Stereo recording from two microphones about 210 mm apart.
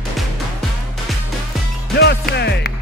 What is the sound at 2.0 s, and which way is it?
Music, 50° left (ahead or behind).